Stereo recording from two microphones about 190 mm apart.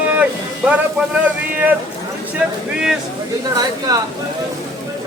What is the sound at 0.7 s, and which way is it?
Speech, 5° right (ahead or behind).